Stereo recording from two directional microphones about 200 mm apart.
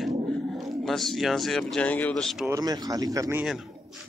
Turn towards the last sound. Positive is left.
turn(degrees=-15)  # may be behind; listen again after turning